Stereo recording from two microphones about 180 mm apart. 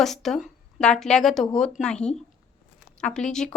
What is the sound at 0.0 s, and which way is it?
A woman's voice, centre (ahead or behind).